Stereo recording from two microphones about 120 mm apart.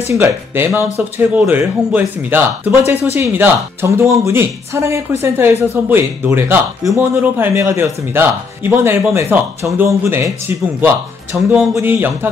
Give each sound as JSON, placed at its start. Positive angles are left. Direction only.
{"t": 0.0, "sound": "speech", "side_deg": -20}
{"t": 11.3, "sound": "speech", "side_deg": -10}